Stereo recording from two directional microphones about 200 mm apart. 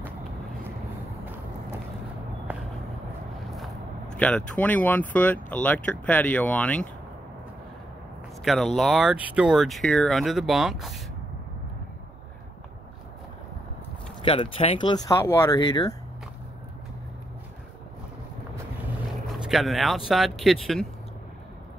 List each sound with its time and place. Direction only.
4.2 s speech: 5° left (ahead or behind)
8.5 s speech: centre (ahead or behind)
14.2 s speech: 25° left (ahead or behind)
19.4 s speech: centre (ahead or behind)